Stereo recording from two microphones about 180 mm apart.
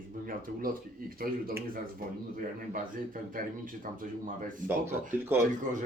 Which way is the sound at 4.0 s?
50° right (ahead or behind).